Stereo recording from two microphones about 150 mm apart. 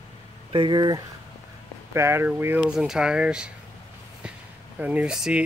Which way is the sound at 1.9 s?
15° right (ahead or behind).